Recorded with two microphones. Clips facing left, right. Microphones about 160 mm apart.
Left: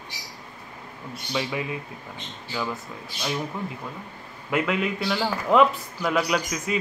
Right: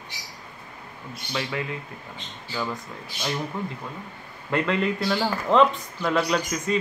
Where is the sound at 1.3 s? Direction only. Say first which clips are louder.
Left 1 dB; 15° left (ahead or behind).